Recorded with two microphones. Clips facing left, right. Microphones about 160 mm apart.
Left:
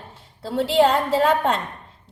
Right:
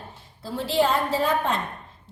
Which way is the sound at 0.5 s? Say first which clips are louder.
Left 5 dB; 70° left (ahead or behind).